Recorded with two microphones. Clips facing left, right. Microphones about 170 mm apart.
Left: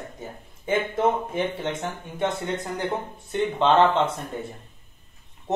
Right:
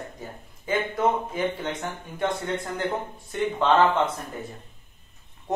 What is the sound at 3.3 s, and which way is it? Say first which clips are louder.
Speech: left 1 dB; 25° left (ahead or behind).